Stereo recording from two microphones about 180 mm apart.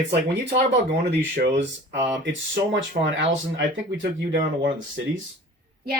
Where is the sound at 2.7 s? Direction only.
90° right.